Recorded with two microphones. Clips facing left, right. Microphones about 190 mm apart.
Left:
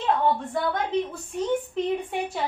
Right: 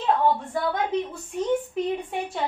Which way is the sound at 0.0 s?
Centre (ahead or behind).